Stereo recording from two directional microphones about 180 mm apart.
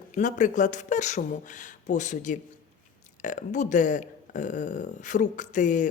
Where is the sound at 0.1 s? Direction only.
45° left (ahead or behind).